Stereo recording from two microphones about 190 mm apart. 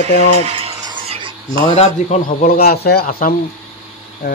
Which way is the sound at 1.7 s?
35° left (ahead or behind).